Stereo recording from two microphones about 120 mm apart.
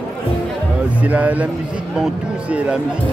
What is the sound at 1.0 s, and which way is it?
Speech, 15° right (ahead or behind).